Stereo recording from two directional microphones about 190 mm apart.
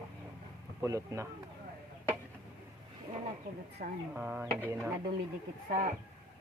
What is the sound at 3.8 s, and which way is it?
Speech, 45° right (ahead or behind).